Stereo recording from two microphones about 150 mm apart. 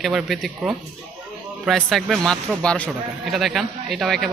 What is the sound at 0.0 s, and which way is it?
Speech, centre (ahead or behind).